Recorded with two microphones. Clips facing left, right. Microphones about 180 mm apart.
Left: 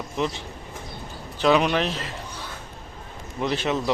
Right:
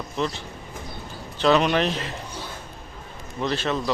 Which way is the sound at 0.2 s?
15° left (ahead or behind).